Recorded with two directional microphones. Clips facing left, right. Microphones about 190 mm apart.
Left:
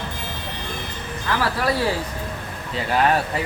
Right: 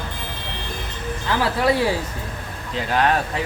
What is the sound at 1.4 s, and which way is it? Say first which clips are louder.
Speech: right 4 dB; 20° right (ahead or behind).